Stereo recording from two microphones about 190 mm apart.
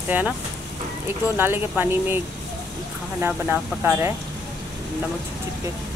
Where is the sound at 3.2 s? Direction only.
10° right (ahead or behind).